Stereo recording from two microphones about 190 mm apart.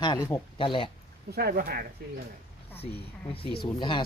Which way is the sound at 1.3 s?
50° right (ahead or behind).